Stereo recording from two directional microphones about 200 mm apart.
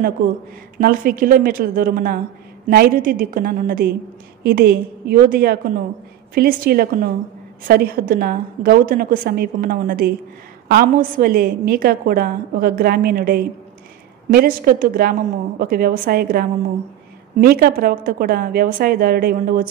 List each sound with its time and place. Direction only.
0.7 s a woman's voice: 45° right (ahead or behind)